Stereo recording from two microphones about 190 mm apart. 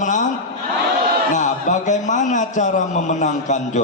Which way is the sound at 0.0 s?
40° left (ahead or behind).